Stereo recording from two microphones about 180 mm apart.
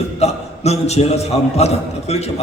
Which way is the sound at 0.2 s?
35° left (ahead or behind).